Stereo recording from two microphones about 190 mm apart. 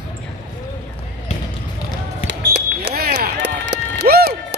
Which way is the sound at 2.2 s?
60° right (ahead or behind).